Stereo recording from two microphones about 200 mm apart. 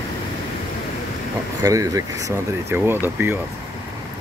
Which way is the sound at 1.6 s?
15° right (ahead or behind).